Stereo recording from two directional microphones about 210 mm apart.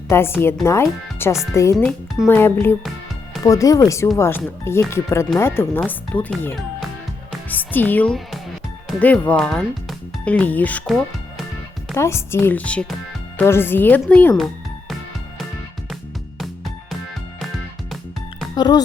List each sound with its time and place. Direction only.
0.1 s speech: 10° left (ahead or behind)
1.7 s speech: centre (ahead or behind)
11.9 s speech: 15° left (ahead or behind)
18.5 s music: 20° left (ahead or behind)